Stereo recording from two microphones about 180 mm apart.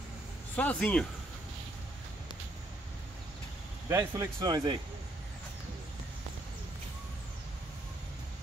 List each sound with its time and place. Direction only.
0.6 s speech: 10° left (ahead or behind)
3.9 s speech: 15° right (ahead or behind)